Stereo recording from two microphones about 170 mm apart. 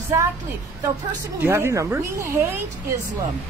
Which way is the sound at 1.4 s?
15° right (ahead or behind).